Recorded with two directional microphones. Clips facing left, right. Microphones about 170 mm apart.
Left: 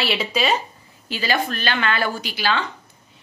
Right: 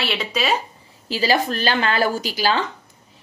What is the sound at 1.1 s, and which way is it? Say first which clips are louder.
Speech: right 3 dB; 35° right (ahead or behind).